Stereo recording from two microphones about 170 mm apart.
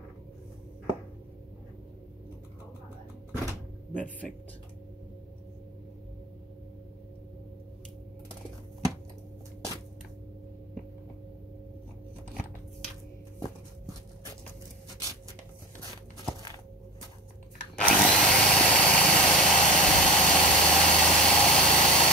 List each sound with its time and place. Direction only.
3.9 s speech: 10° left (ahead or behind)
17.7 s drill: 5° left (ahead or behind)